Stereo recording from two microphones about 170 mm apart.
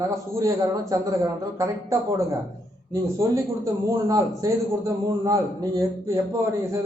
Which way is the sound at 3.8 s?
20° right (ahead or behind).